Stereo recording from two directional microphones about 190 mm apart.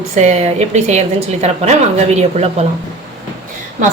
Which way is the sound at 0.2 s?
35° right (ahead or behind).